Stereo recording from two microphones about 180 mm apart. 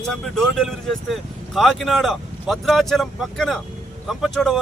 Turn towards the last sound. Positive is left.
turn(degrees=0)  # may be behind; listen again after turning